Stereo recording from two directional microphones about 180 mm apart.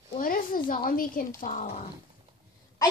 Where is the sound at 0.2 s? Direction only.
50° left (ahead or behind).